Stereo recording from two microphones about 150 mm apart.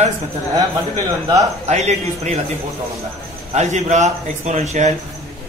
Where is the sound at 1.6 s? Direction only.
50° right (ahead or behind).